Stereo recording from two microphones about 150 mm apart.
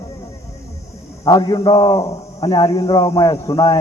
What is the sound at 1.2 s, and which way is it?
A man's voice, 25° left (ahead or behind).